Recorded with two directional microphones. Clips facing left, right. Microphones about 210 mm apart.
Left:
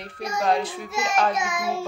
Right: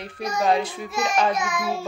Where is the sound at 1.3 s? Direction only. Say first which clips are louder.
Right 1 dB; 25° left (ahead or behind).